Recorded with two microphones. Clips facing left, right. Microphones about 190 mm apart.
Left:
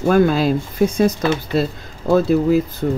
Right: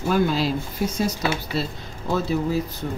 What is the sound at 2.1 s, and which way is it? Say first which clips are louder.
Speech: left 9 dB; 55° left (ahead or behind).